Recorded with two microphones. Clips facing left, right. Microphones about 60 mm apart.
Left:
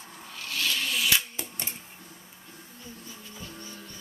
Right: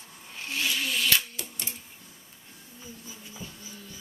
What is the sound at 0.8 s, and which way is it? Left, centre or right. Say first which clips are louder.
Camera: even; centre.